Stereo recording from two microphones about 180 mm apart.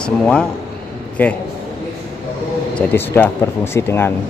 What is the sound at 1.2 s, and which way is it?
Speech, 10° left (ahead or behind).